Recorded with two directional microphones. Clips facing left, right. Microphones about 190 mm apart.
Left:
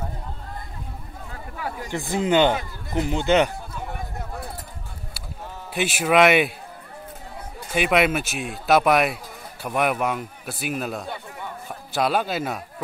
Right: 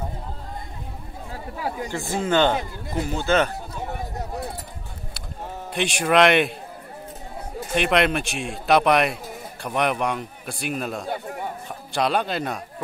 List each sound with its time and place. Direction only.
1.3 s chatter: 30° right (ahead or behind)
1.9 s speech: 20° left (ahead or behind)
5.7 s speech: 5° left (ahead or behind)
7.7 s speech: 5° left (ahead or behind)
11.1 s a man's voice: 45° right (ahead or behind)
11.9 s speech: 5° left (ahead or behind)